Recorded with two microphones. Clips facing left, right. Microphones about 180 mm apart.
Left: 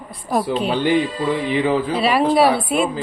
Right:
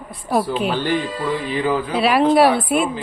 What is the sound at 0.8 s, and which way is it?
Speech, 15° left (ahead or behind).